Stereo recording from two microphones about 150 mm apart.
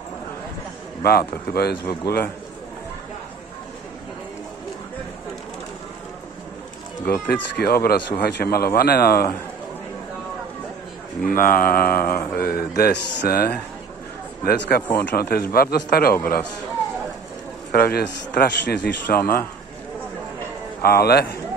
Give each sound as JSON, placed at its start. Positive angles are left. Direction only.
{"t": 1.0, "sound": "a man's voice", "side_deg": 90}
{"t": 7.1, "sound": "a man's voice", "side_deg": 90}
{"t": 11.2, "sound": "a man's voice", "side_deg": 70}
{"t": 17.6, "sound": "a man's voice", "side_deg": 90}
{"t": 20.8, "sound": "a man's voice", "side_deg": 90}